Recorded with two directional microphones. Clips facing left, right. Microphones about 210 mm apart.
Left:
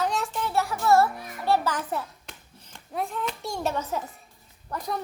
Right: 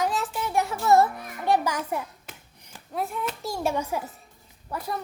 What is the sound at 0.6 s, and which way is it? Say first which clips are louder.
A child's voice: right 1 dB; 20° right (ahead or behind).